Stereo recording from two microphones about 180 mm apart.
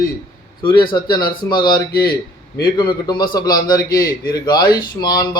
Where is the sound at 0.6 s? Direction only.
25° left (ahead or behind).